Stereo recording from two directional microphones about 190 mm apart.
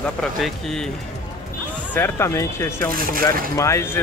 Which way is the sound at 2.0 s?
15° left (ahead or behind).